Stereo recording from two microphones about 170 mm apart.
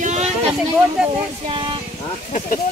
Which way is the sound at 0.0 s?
40° right (ahead or behind).